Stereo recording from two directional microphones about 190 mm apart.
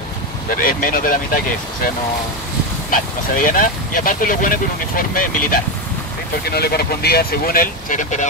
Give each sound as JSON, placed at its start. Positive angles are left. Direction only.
{"t": 0.5, "sound": "speech", "side_deg": 45}
{"t": 2.9, "sound": "speech", "side_deg": 45}